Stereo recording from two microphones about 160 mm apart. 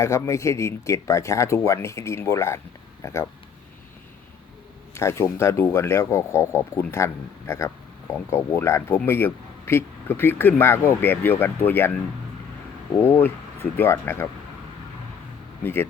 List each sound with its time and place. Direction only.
0.0 s speech: 20° left (ahead or behind)
4.9 s speech: 15° left (ahead or behind)
13.0 s speech: 10° left (ahead or behind)
15.6 s speech: 15° left (ahead or behind)